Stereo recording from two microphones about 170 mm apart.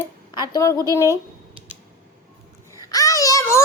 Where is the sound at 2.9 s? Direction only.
20° left (ahead or behind).